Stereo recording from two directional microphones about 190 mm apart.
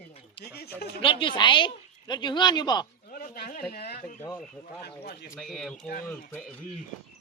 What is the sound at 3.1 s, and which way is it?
Speech, 50° left (ahead or behind).